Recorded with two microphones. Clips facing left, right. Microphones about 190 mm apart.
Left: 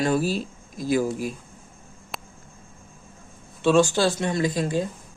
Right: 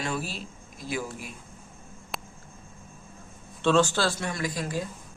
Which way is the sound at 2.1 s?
Centre (ahead or behind).